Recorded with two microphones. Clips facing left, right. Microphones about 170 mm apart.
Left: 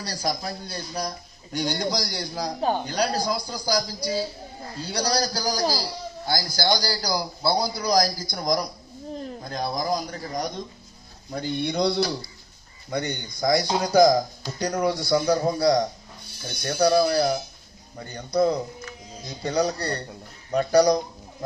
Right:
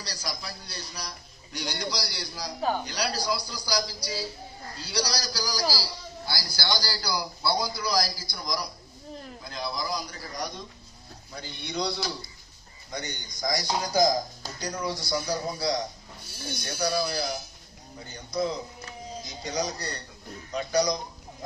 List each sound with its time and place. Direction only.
0.0 s a man's voice: 50° left (ahead or behind)
2.6 s speech: 25° left (ahead or behind)
2.9 s a man's voice: 50° left (ahead or behind)
16.6 s speech: 60° left (ahead or behind)